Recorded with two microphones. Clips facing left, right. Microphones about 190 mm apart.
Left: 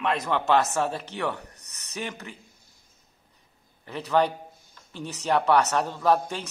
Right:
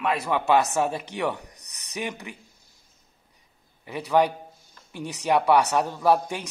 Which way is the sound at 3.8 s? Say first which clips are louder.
Right 2 dB; 10° right (ahead or behind).